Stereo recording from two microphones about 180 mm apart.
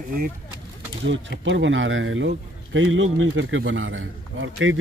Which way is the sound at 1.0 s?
85° right.